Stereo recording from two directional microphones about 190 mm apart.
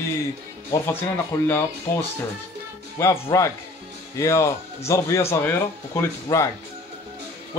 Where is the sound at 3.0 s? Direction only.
15° left (ahead or behind).